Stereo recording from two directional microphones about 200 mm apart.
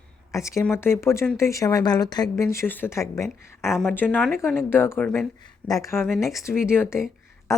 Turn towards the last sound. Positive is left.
turn(degrees=15)  # may be behind; listen again after turning